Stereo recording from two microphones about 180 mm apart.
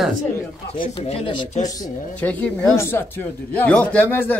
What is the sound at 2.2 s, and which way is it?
Speech, 10° left (ahead or behind).